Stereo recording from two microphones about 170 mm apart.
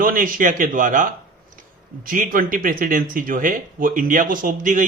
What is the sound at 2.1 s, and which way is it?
Speech, 55° right (ahead or behind).